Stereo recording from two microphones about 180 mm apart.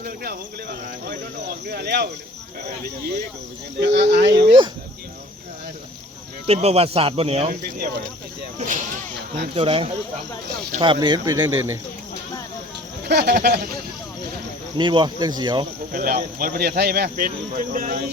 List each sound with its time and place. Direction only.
0.0 s speech: 60° right (ahead or behind)
3.8 s speech: 75° right (ahead or behind)
6.5 s speech: 35° right (ahead or behind)
8.5 s speech: 45° right (ahead or behind)
9.6 s speech: 30° right (ahead or behind)
13.1 s speech: 65° right (ahead or behind)
14.8 s speech: 25° right (ahead or behind)
15.9 s speech: 55° right (ahead or behind)